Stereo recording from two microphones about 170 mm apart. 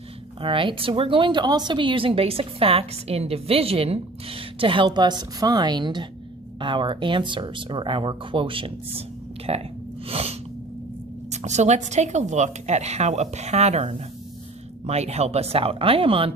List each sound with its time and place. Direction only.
0.4 s a woman's voice: 30° right (ahead or behind)